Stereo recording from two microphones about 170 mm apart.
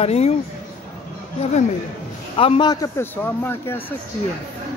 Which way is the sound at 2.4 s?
30° left (ahead or behind).